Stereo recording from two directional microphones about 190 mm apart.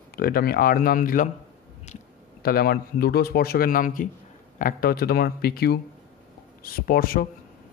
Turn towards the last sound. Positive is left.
turn(degrees=50)  # may be behind; listen again after turning